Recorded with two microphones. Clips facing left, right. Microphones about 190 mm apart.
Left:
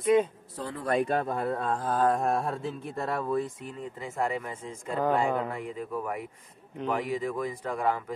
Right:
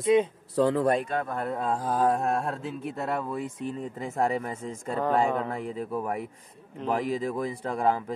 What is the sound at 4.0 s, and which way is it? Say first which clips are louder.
Speech: right 3 dB; 40° right (ahead or behind).